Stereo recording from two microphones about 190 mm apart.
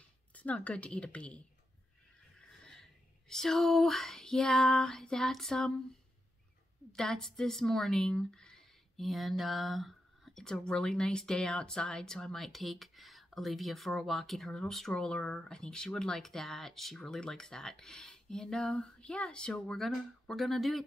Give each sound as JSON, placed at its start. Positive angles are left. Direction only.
{"t": 0.3, "sound": "speech", "side_deg": 5}
{"t": 2.6, "sound": "a sound", "side_deg": 5}
{"t": 6.9, "sound": "speech", "side_deg": 5}